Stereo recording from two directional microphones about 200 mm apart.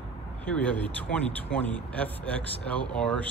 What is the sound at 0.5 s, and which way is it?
Speech, 5° left (ahead or behind).